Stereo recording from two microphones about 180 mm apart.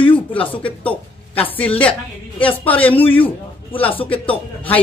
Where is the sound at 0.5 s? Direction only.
10° left (ahead or behind).